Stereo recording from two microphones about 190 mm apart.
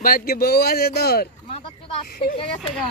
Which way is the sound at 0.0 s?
50° left (ahead or behind).